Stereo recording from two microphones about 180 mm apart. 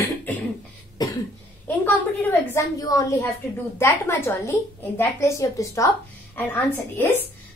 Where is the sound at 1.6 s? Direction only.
10° left (ahead or behind).